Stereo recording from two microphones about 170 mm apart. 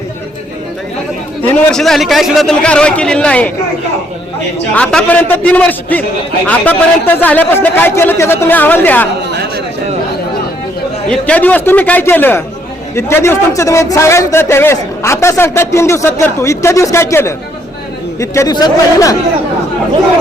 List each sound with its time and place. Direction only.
1.7 s speech: centre (ahead or behind)
4.7 s speech: 5° left (ahead or behind)
11.1 s speech: 10° left (ahead or behind)